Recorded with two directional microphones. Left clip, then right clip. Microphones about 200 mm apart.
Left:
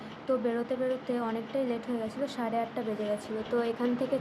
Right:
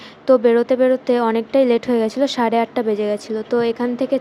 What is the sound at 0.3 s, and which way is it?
A woman's voice, 50° right (ahead or behind).